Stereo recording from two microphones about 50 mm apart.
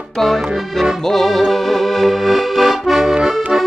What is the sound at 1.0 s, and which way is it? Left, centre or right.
Music, centre.